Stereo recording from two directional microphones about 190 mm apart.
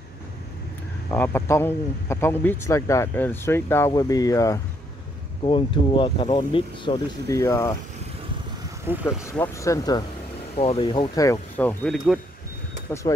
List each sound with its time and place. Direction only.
1.1 s speech: 10° left (ahead or behind)
8.9 s speech: 10° right (ahead or behind)
9.2 s speech: 15° left (ahead or behind)
10.5 s speech: 30° left (ahead or behind); by 12.2 s 5° left (ahead or behind)